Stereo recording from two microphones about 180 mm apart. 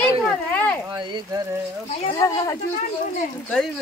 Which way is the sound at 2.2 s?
20° left (ahead or behind).